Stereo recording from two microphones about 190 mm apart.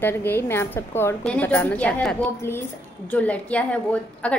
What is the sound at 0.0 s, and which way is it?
A woman's voice, 10° left (ahead or behind).